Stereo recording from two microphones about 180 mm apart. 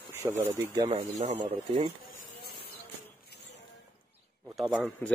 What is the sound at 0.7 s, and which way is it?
Speech, 35° right (ahead or behind).